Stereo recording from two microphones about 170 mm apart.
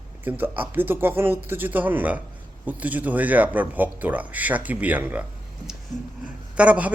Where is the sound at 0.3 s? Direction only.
10° right (ahead or behind).